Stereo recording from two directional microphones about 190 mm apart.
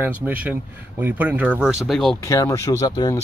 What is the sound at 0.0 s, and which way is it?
Speech, 10° right (ahead or behind).